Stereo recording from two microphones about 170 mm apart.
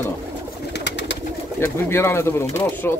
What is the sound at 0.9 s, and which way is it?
Bird, 90° left.